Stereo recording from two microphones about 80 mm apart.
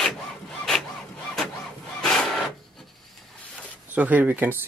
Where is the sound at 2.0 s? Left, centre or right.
Centre.